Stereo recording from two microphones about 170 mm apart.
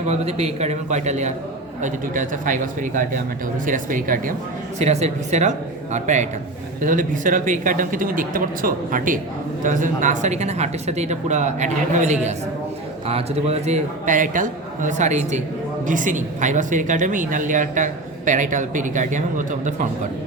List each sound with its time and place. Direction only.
0.1 s a man's voice: 40° right (ahead or behind)
4.8 s speech: 40° right (ahead or behind)